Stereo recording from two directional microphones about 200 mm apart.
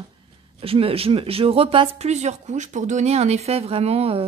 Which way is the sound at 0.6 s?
30° right (ahead or behind).